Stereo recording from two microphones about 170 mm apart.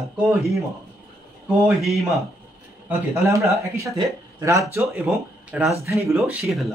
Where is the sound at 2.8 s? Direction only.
15° right (ahead or behind).